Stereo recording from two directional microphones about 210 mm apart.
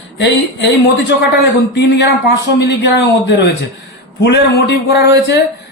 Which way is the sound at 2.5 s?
55° left (ahead or behind).